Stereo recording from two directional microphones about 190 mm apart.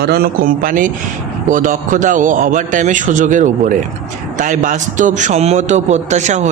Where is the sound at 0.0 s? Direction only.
55° right (ahead or behind).